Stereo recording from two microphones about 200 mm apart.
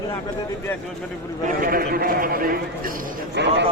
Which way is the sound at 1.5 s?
45° right (ahead or behind).